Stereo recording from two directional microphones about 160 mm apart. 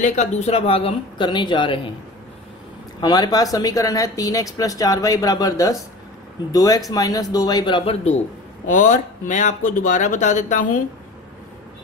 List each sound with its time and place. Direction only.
0.0 s speech: 45° left (ahead or behind); by 1.8 s 30° left (ahead or behind)
3.0 s speech: 25° left (ahead or behind); by 8.2 s 40° left (ahead or behind)
8.6 s speech: 55° left (ahead or behind)